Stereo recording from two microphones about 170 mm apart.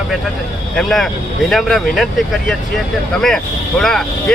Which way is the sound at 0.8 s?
Centre (ahead or behind).